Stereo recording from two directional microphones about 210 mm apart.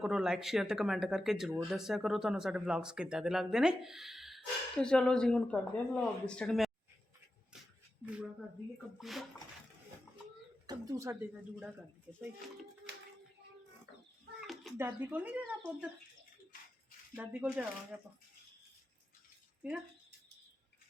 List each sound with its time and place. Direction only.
0.0 s speech: centre (ahead or behind)
8.0 s speech: 5° right (ahead or behind)
10.7 s speech: 15° right (ahead or behind)
14.4 s a sound: centre (ahead or behind)
14.8 s speech: 10° right (ahead or behind)
17.2 s speech: 5° right (ahead or behind)